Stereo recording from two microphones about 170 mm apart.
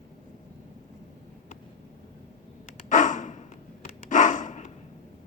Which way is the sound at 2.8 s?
45° left (ahead or behind).